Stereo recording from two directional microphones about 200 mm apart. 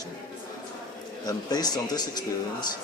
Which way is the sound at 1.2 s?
20° left (ahead or behind).